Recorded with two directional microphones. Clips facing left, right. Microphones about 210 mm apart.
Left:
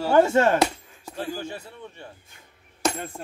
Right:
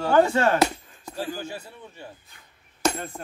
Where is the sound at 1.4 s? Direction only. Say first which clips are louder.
Left 1 dB; 5° right (ahead or behind).